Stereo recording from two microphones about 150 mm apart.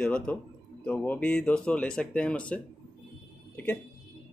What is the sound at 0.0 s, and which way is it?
Speech, 5° left (ahead or behind).